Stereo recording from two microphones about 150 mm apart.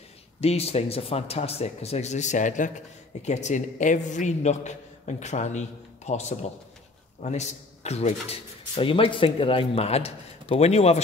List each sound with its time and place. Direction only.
0.4 s speech: 45° left (ahead or behind)